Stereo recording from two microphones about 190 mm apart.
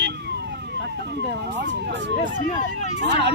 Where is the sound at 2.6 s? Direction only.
40° left (ahead or behind).